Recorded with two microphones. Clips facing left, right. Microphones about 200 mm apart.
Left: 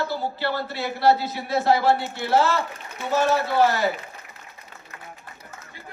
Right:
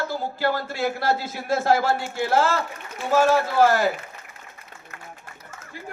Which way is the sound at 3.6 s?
50° right (ahead or behind).